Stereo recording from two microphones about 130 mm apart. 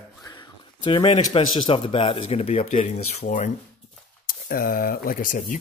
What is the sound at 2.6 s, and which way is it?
Speech, 70° left (ahead or behind).